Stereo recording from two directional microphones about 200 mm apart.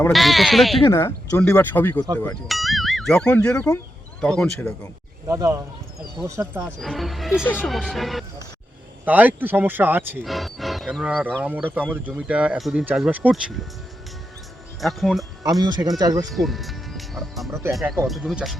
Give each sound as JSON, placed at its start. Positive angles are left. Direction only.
{"t": 0.1, "sound": "speech", "side_deg": 0}
{"t": 0.9, "sound": "speech", "side_deg": 15}
{"t": 5.3, "sound": "speech", "side_deg": -15}
{"t": 6.7, "sound": "speech", "side_deg": 0}
{"t": 10.2, "sound": "wild animals", "side_deg": 0}
{"t": 11.4, "sound": "speech", "side_deg": -10}
{"t": 14.8, "sound": "speech", "side_deg": 0}
{"t": 15.6, "sound": "speech", "side_deg": -20}
{"t": 16.3, "sound": "speech", "side_deg": 0}